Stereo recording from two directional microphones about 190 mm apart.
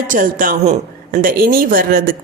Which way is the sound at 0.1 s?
45° right (ahead or behind).